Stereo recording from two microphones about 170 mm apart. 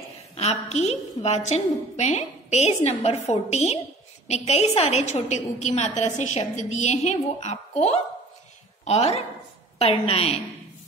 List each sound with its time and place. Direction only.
0.4 s a woman's voice: 40° left (ahead or behind)